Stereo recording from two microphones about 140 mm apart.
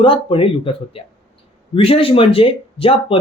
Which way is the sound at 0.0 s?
40° left (ahead or behind).